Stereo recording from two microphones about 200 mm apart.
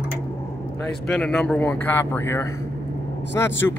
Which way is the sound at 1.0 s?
5° left (ahead or behind).